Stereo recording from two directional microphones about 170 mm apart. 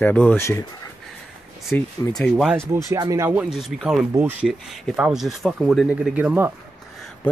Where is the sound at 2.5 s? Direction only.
20° right (ahead or behind).